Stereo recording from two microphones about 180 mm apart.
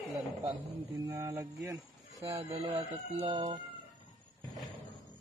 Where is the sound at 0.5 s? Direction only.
15° right (ahead or behind).